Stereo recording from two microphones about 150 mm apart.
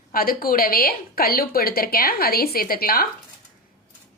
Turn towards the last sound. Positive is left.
turn(degrees=80)